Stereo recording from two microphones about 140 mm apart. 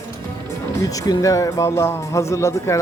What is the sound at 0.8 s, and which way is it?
Speech, 25° left (ahead or behind).